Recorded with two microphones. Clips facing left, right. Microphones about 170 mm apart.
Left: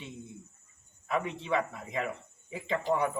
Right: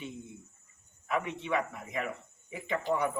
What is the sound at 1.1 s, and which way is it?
A man's voice, 30° left (ahead or behind).